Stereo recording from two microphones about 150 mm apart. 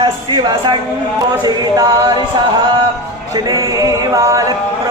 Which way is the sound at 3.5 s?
20° right (ahead or behind).